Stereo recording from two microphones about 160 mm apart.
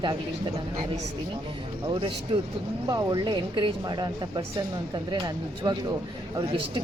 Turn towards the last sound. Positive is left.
turn(degrees=-25)  # may be behind; listen again after turning